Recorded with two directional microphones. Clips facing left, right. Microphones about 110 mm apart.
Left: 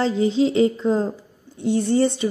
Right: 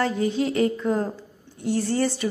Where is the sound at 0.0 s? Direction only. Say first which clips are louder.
Left 4 dB; 20° left (ahead or behind).